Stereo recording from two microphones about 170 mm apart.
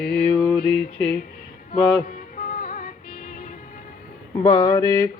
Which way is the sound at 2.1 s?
55° left (ahead or behind).